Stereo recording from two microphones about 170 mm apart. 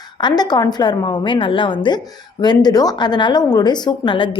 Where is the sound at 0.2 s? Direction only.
25° left (ahead or behind).